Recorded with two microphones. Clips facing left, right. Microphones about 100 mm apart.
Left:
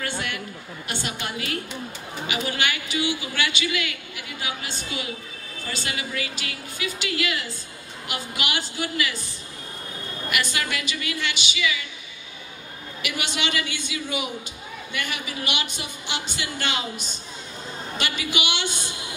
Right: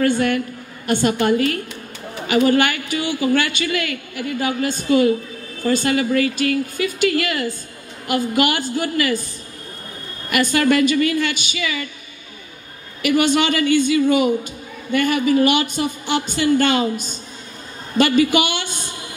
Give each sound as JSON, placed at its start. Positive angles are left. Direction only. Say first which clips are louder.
{"t": 0.0, "sound": "a man's voice", "louder": "right 13 dB", "side_deg": -45}
{"t": 10.3, "sound": "a man's voice", "louder": "right 12 dB", "side_deg": -45}
{"t": 13.0, "sound": "a man's voice", "louder": "right 13 dB", "side_deg": -45}